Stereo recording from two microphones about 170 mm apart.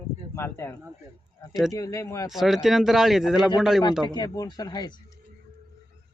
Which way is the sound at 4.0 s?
25° left (ahead or behind).